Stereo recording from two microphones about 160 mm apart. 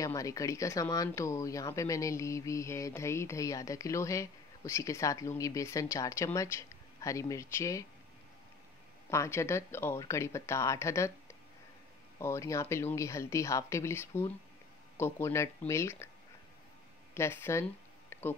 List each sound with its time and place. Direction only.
0.0 s speech: 20° left (ahead or behind)
9.1 s speech: 15° left (ahead or behind)
12.2 s speech: 20° left (ahead or behind)
17.1 s speech: 15° left (ahead or behind)
18.1 s music: 15° left (ahead or behind)